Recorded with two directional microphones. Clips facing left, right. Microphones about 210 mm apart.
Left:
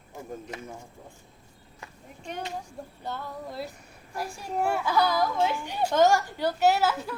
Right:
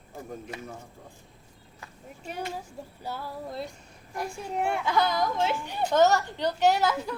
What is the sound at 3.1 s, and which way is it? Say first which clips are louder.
A child's voice: even; 10° right (ahead or behind).